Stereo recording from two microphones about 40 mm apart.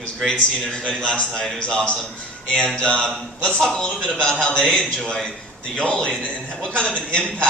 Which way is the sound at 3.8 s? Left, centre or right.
Left.